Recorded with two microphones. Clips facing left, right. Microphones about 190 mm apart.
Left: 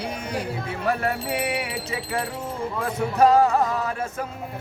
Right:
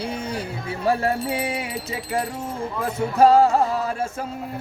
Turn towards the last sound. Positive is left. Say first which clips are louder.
# right 2 dB
turn(degrees=-30)  # may be behind; listen again after turning